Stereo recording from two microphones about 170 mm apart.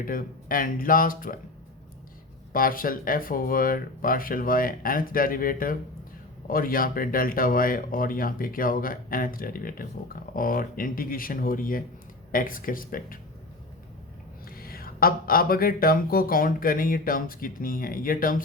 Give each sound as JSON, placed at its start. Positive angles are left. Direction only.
{"t": 0.0, "sound": "speech", "side_deg": 55}
{"t": 2.5, "sound": "speech", "side_deg": 55}
{"t": 14.4, "sound": "speech", "side_deg": 60}